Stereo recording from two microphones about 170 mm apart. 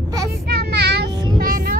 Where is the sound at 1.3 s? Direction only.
60° right (ahead or behind).